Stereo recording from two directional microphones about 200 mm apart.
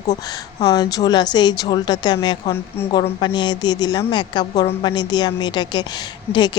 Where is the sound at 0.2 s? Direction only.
20° left (ahead or behind).